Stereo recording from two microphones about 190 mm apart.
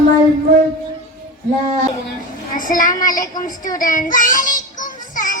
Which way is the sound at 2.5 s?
45° left (ahead or behind).